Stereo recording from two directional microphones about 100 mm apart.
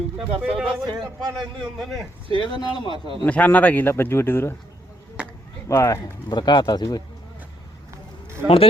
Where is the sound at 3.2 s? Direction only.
15° left (ahead or behind).